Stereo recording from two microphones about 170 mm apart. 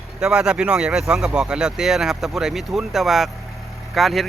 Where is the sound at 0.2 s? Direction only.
5° right (ahead or behind).